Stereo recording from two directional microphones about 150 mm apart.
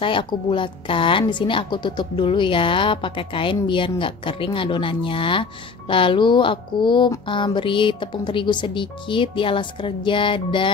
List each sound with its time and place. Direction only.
0.0 s a woman's voice: 35° left (ahead or behind)